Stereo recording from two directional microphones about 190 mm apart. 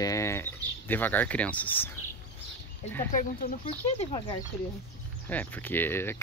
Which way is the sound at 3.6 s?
30° left (ahead or behind).